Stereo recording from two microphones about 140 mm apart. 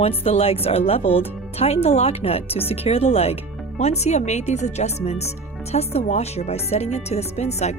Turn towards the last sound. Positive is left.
turn(degrees=50)  # may be behind; listen again after turning